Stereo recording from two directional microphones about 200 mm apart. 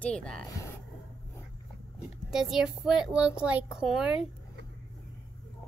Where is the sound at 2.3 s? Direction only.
Centre (ahead or behind).